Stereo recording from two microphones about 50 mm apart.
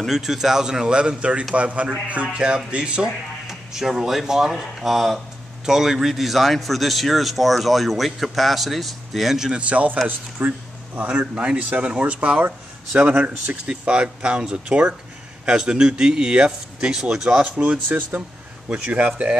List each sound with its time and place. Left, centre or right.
0.1 s a man's voice: centre; by 2.2 s right
2.2 s speech: centre
3.4 s speech: centre
9.5 s speech: right
13.7 s a man's voice: centre
17.9 s speech: right